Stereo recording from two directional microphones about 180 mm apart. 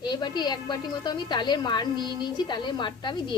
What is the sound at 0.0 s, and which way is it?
A woman's voice, 25° left (ahead or behind).